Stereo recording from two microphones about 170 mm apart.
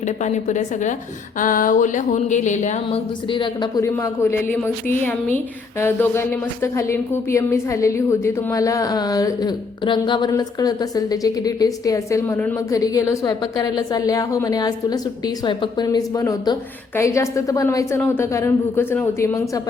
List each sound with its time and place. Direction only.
0.3 s speech: 45° left (ahead or behind)
3.3 s a woman's voice: 25° left (ahead or behind)